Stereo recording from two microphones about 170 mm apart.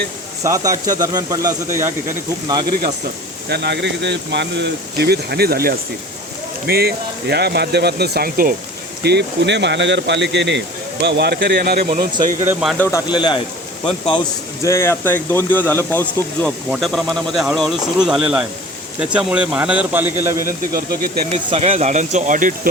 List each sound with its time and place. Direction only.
0.4 s speech: 20° right (ahead or behind)
3.5 s speech: 85° right; by 8.5 s 60° right (ahead or behind)
9.0 s speech: 80° right
11.0 s speech: 70° right (ahead or behind)
12.5 s speech: 5° right (ahead or behind)
13.1 s a man's voice: 25° left (ahead or behind)
14.6 s speech: 15° left (ahead or behind)
16.6 s a man's voice: 5° right (ahead or behind)
20.7 s speech: 60° right (ahead or behind)
21.2 s speech: 40° right (ahead or behind)